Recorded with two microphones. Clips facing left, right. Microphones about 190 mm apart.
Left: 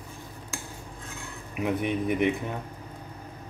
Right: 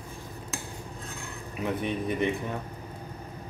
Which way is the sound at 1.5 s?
15° left (ahead or behind).